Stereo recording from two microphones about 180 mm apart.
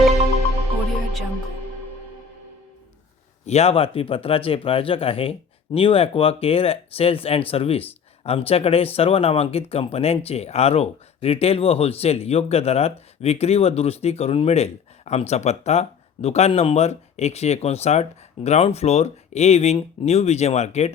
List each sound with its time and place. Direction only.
3.4 s speech: 35° left (ahead or behind)